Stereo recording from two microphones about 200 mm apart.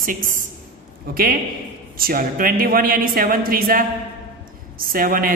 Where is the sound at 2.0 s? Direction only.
45° right (ahead or behind).